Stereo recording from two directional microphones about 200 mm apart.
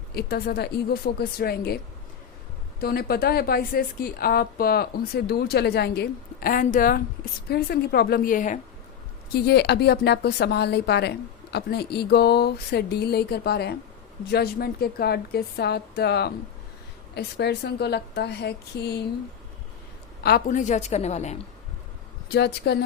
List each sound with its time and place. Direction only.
0.1 s a woman's voice: 50° left (ahead or behind)
2.8 s a woman's voice: 50° left (ahead or behind)
9.3 s a woman's voice: 55° left (ahead or behind)
20.2 s a woman's voice: 45° left (ahead or behind)
22.3 s a woman's voice: 55° left (ahead or behind)